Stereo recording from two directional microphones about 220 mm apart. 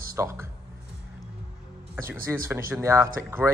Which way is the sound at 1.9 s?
10° right (ahead or behind).